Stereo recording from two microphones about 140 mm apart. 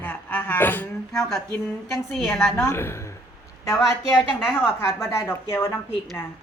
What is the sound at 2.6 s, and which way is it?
A woman's voice, 20° left (ahead or behind).